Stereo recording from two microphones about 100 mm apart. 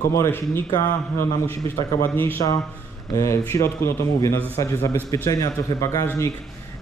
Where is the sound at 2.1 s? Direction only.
20° left (ahead or behind).